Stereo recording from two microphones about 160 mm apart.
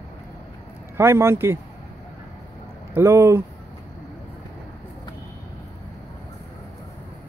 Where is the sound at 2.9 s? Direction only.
15° right (ahead or behind).